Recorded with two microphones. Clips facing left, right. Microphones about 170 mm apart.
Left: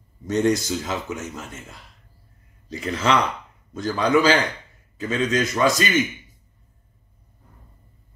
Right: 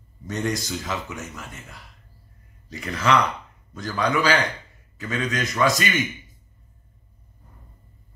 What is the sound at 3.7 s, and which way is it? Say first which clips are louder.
Speech: left 5 dB; 25° left (ahead or behind).